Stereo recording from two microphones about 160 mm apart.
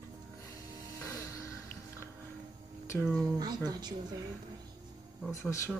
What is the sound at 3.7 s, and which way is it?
Speech, 25° right (ahead or behind).